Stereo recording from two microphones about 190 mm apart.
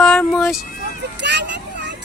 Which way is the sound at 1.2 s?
65° right (ahead or behind).